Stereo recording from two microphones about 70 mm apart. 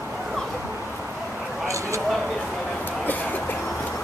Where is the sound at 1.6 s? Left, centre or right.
Right.